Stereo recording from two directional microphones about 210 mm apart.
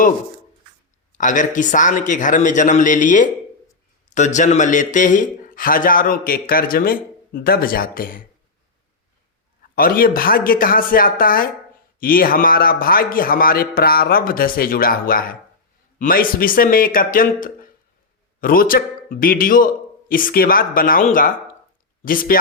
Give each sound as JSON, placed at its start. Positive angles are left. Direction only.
{"t": 1.2, "sound": "a man's voice", "side_deg": 40}
{"t": 9.7, "sound": "a man's voice", "side_deg": 45}